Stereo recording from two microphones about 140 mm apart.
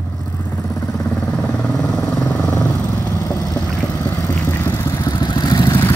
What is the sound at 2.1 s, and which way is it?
Vehicle, 25° left (ahead or behind).